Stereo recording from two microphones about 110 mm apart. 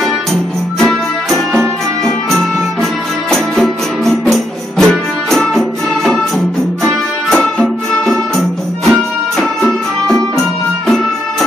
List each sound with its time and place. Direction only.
0.0 s music: centre (ahead or behind)